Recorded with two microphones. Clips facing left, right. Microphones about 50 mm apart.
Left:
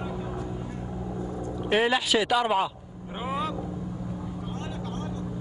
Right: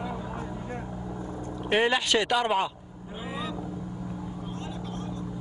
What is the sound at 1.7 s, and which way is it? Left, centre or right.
Speech, centre.